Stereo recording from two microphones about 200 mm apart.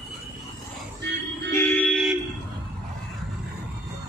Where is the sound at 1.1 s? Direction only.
60° right (ahead or behind).